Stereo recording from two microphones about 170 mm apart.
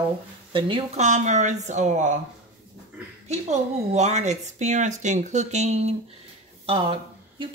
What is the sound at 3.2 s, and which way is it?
A woman's voice, 40° right (ahead or behind).